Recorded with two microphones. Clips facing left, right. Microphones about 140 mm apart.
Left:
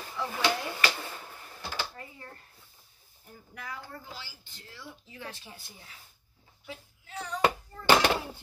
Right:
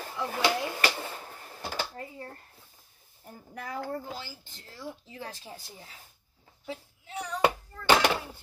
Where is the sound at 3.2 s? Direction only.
40° right (ahead or behind).